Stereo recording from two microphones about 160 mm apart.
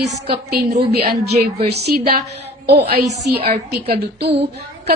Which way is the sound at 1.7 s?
85° right.